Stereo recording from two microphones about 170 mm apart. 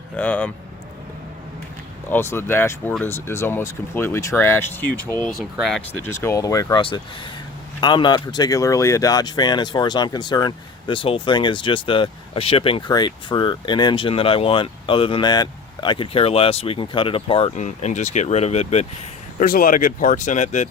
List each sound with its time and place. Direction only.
0.2 s speech: 10° left (ahead or behind)
2.0 s speech: 15° left (ahead or behind)
5.5 s speech: centre (ahead or behind)
5.9 s speech: 15° left (ahead or behind); by 18.9 s 40° left (ahead or behind)
19.4 s speech: 55° left (ahead or behind)